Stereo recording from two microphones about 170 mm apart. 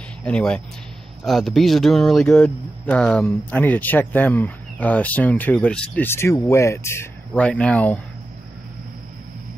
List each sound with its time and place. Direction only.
0.2 s speech: 5° left (ahead or behind)